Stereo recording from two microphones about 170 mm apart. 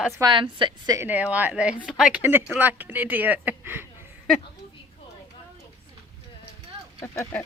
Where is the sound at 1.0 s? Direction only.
10° right (ahead or behind).